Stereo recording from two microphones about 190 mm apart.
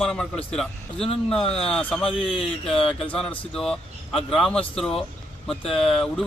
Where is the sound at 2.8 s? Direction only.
5° left (ahead or behind).